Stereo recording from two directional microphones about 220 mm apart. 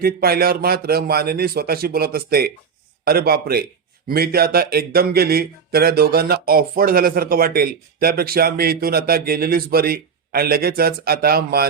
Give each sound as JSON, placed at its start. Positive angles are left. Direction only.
{"t": 0.0, "sound": "speech", "side_deg": -45}